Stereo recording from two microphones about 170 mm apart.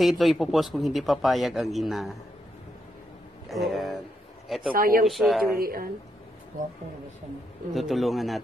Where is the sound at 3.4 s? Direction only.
Centre (ahead or behind).